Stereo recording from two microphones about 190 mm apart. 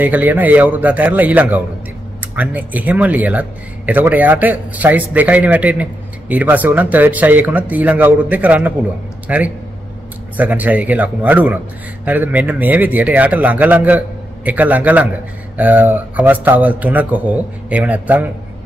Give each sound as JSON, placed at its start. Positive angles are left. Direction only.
{"t": 0.0, "sound": "a man's voice", "side_deg": -10}